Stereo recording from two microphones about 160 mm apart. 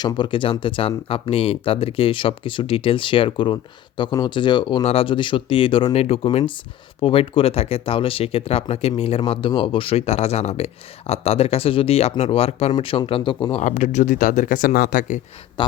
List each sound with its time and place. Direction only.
0.0 s speech: 30° left (ahead or behind)
13.6 s speech: 50° left (ahead or behind)
15.6 s a sound: 30° left (ahead or behind)